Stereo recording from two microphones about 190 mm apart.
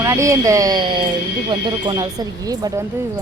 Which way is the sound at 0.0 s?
15° right (ahead or behind).